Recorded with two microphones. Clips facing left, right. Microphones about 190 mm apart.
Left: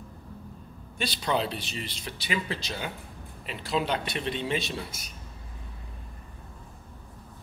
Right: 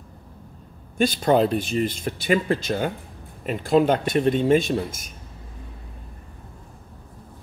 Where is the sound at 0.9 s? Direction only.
50° right (ahead or behind).